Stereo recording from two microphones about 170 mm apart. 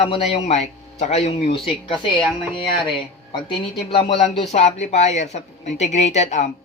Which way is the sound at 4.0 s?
35° left (ahead or behind).